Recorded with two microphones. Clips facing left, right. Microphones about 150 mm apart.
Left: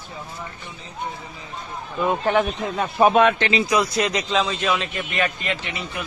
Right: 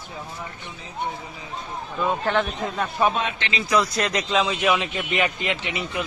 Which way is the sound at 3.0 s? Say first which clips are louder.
Left 8 dB; 50° left (ahead or behind).